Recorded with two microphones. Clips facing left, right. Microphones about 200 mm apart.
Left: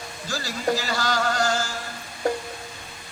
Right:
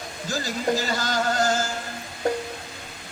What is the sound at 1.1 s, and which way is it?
Chant, 20° right (ahead or behind).